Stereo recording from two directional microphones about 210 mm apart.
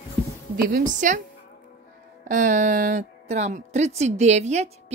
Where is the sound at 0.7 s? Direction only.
35° right (ahead or behind).